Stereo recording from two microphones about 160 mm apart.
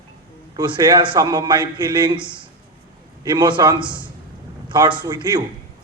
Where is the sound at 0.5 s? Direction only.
25° right (ahead or behind).